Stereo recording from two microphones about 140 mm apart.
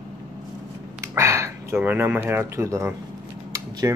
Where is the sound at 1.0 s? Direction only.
20° right (ahead or behind).